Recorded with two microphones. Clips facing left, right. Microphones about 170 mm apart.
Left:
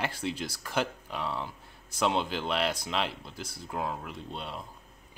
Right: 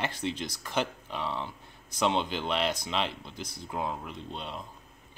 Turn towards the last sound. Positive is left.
turn(degrees=5)  # may be behind; listen again after turning